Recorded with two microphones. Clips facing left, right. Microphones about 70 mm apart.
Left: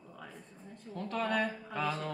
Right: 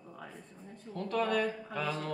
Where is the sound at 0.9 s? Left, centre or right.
Left.